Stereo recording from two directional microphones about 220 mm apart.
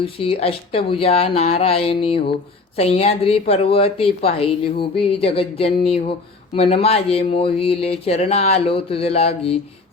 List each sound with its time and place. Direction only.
0.0 s a woman's voice: 25° left (ahead or behind)